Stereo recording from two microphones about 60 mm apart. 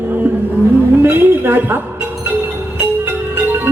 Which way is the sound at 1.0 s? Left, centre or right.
Right.